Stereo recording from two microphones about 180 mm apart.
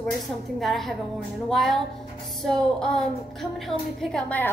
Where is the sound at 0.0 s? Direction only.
Centre (ahead or behind).